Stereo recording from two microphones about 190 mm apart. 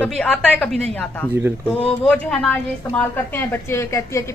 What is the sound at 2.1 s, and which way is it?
A woman's voice, 5° left (ahead or behind).